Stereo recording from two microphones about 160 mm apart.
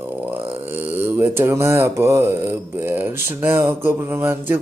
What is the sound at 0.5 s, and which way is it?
Speech, 10° right (ahead or behind).